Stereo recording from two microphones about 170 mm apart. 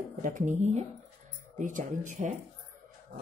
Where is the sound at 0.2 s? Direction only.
50° right (ahead or behind).